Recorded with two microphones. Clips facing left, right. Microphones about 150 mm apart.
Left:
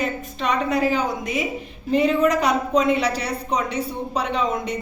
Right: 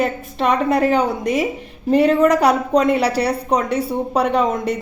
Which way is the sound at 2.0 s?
65° right (ahead or behind).